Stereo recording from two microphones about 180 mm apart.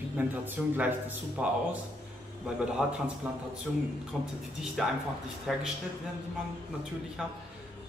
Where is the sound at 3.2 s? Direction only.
5° right (ahead or behind).